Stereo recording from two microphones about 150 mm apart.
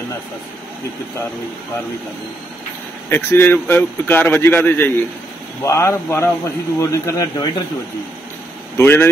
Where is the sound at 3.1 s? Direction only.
15° left (ahead or behind).